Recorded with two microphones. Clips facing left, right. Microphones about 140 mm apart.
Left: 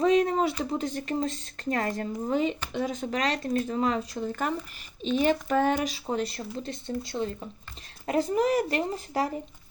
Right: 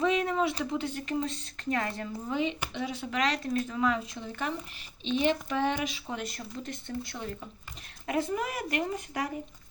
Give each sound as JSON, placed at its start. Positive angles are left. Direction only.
{"t": 0.0, "sound": "a sound", "side_deg": 40}
{"t": 0.6, "sound": "speech", "side_deg": 40}
{"t": 8.0, "sound": "speech", "side_deg": 35}